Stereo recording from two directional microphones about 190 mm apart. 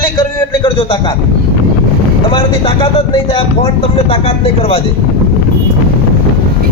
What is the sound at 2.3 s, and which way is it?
Speech, 25° left (ahead or behind).